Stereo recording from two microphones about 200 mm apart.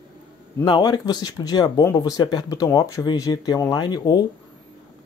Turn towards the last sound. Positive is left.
turn(degrees=20)  # may be behind; listen again after turning